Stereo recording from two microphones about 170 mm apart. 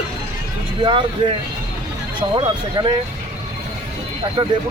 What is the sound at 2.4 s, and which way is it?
Speech, 25° right (ahead or behind).